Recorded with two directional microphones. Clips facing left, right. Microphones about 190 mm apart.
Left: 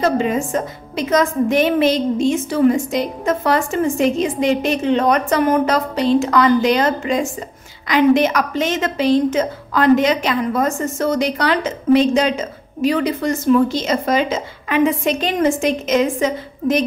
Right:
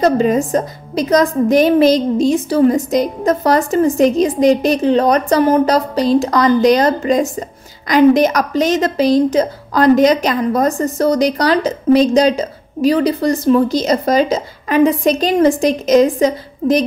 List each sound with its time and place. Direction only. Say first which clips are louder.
0.0 s a woman's voice: right 4 dB; 40° right (ahead or behind)